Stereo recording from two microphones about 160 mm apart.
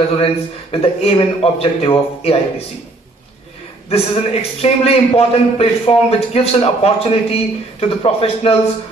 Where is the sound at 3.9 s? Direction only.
40° left (ahead or behind).